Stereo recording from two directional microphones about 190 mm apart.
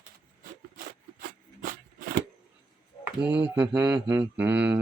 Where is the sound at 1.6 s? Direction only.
50° right (ahead or behind).